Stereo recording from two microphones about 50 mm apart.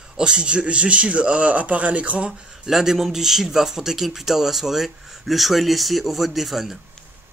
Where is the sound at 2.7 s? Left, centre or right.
Centre.